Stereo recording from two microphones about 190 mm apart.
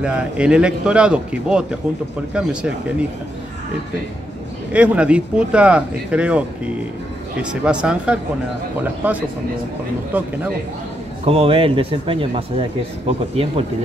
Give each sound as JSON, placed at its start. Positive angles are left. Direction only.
{"t": 0.0, "sound": "speech", "side_deg": -5}
{"t": 4.7, "sound": "speech", "side_deg": -5}
{"t": 11.2, "sound": "speech", "side_deg": -30}